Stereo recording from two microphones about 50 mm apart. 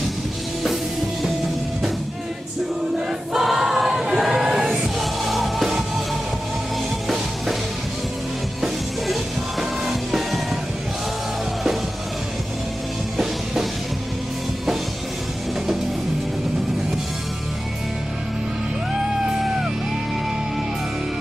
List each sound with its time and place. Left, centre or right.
3.3 s choir: centre
4.6 s music: centre
9.0 s music: centre
19.4 s music: centre